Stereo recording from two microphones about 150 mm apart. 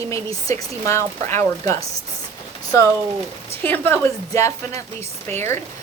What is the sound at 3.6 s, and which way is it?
A woman's voice, 15° left (ahead or behind).